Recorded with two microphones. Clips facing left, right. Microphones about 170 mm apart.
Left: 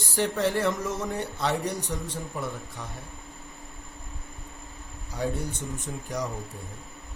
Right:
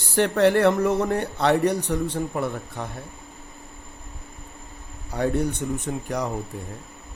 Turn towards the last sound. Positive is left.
turn(degrees=-65)  # may be behind; listen again after turning